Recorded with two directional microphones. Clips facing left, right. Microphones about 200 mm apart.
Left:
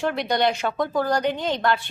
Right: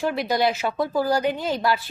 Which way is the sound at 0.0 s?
5° right (ahead or behind).